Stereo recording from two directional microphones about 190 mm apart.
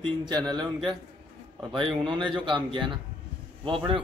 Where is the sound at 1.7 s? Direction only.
25° right (ahead or behind).